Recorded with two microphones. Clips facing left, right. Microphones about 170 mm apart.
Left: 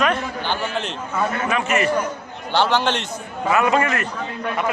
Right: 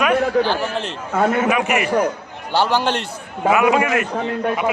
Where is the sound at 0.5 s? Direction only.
35° right (ahead or behind).